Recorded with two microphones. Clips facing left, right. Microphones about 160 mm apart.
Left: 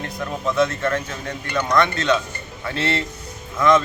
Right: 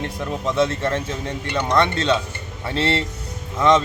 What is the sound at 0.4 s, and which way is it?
A man's voice, 30° right (ahead or behind).